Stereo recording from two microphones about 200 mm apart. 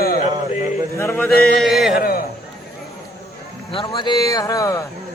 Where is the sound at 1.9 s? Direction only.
45° left (ahead or behind).